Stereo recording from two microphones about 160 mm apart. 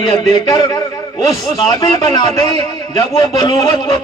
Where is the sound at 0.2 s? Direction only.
20° left (ahead or behind).